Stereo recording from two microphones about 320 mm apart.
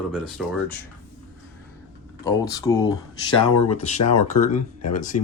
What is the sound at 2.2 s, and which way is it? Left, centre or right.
Speech, centre.